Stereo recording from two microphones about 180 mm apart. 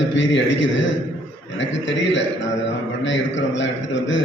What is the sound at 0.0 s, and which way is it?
A man's voice, 85° left.